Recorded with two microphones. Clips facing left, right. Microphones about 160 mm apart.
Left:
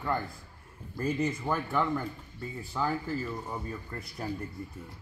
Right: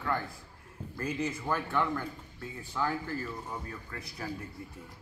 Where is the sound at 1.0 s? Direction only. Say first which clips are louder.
Left 4 dB; centre (ahead or behind).